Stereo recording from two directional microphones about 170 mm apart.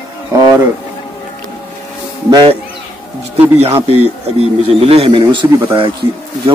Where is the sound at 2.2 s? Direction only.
25° right (ahead or behind).